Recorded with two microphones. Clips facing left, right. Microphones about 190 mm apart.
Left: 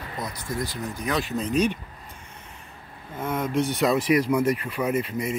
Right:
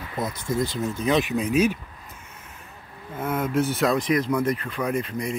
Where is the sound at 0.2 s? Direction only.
25° right (ahead or behind); by 1.8 s 5° right (ahead or behind).